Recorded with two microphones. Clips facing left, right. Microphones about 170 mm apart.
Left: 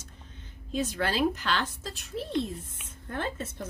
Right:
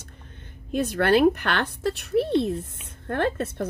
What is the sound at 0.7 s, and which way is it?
Speech, 60° right (ahead or behind).